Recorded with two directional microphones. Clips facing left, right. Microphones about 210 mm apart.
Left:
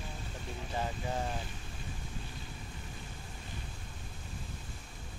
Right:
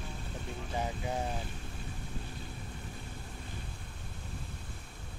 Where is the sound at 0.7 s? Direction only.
15° right (ahead or behind).